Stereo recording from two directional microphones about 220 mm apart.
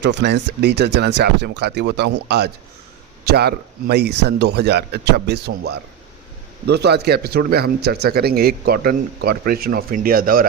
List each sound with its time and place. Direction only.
0.0 s a man's voice: 50° right (ahead or behind)